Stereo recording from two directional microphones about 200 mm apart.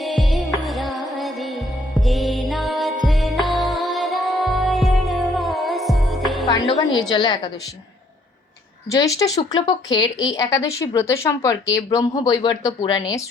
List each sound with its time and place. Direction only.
0.6 s music: centre (ahead or behind)
6.7 s a woman's voice: 20° left (ahead or behind)
8.9 s speech: 15° left (ahead or behind)